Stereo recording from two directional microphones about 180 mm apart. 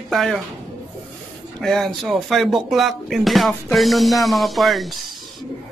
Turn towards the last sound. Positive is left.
turn(degrees=0)  # may be behind; listen again after turning